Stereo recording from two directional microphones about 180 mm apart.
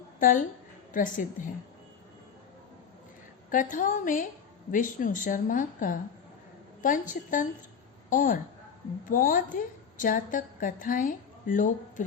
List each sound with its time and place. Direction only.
0.9 s a woman's voice: 45° left (ahead or behind)
3.5 s a woman's voice: 45° left (ahead or behind)